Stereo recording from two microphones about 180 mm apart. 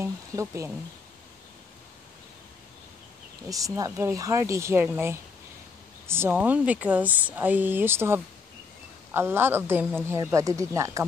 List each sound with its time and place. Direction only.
0.0 s speech: 15° right (ahead or behind)
3.4 s speech: 20° right (ahead or behind)